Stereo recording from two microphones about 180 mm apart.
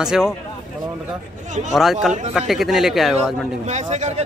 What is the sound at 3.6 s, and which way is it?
Speech, 40° right (ahead or behind).